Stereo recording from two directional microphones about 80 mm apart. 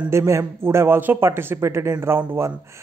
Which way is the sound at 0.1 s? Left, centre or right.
Right.